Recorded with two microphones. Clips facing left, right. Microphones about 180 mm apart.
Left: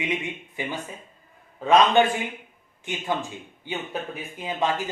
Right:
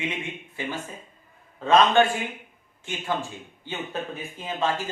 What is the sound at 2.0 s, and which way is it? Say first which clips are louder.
Speech: even; 15° left (ahead or behind).